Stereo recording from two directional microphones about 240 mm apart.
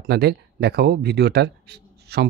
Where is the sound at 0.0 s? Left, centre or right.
Right.